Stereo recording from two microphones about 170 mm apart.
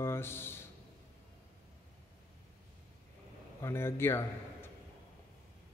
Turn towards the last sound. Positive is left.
turn(degrees=15)  # may be behind; listen again after turning